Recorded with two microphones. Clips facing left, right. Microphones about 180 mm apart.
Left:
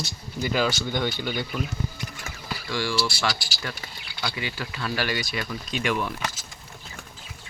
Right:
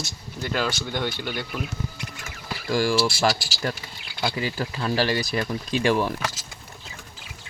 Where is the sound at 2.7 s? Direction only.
45° right (ahead or behind).